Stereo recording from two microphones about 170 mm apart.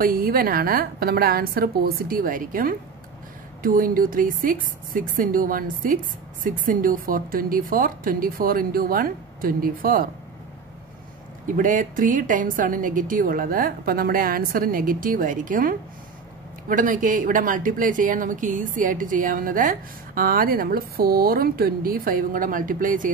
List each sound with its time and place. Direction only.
0.0 s speech: 60° right (ahead or behind)
11.4 s speech: 50° right (ahead or behind)